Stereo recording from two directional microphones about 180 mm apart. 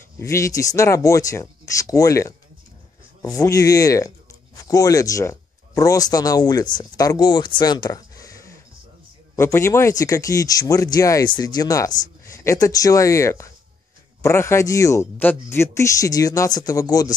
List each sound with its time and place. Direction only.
0.2 s speech: 15° left (ahead or behind)